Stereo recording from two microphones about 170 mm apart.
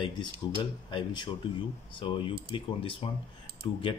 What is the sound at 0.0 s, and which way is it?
Speech, 30° left (ahead or behind).